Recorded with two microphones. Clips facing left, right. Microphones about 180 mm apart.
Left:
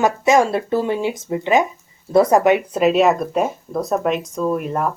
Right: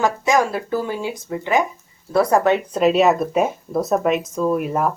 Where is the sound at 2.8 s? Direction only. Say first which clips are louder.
Right 2 dB; centre (ahead or behind).